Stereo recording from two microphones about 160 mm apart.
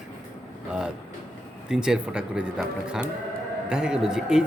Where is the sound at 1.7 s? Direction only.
5° right (ahead or behind).